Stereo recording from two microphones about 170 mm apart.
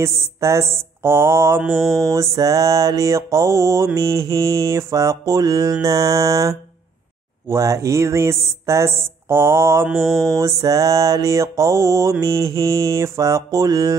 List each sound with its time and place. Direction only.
0.0 s speech: 15° right (ahead or behind)
1.7 s mantra: centre (ahead or behind)
2.0 s mantra: 20° right (ahead or behind)
7.4 s speech: 15° right (ahead or behind)
9.9 s mantra: centre (ahead or behind)
10.3 s mantra: 20° right (ahead or behind)